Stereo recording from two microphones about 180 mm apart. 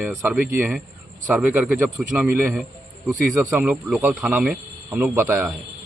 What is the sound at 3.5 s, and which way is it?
A man's voice, 10° right (ahead or behind).